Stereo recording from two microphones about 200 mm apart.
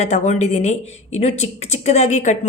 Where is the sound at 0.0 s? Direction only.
35° left (ahead or behind).